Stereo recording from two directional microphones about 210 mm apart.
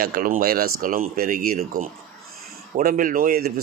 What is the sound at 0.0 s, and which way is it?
A man's voice, 40° right (ahead or behind).